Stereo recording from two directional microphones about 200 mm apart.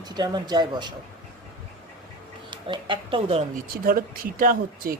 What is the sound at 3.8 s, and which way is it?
Speech, 45° right (ahead or behind).